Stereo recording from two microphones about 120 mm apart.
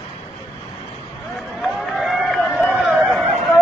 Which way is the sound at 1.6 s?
Centre (ahead or behind).